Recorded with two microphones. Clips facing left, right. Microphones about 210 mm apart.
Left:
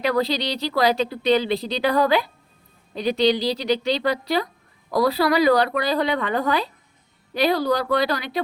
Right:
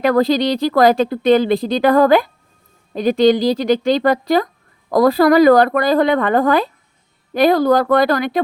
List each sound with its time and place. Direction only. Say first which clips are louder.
0.0 s speech: right 8 dB; 50° right (ahead or behind)